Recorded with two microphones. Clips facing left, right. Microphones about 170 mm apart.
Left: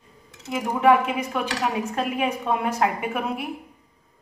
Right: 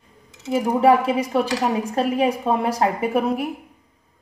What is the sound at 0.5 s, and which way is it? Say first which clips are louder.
A woman's voice: right 3 dB; 35° right (ahead or behind).